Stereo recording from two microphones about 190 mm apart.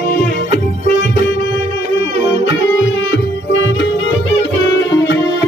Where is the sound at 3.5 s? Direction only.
75° left (ahead or behind).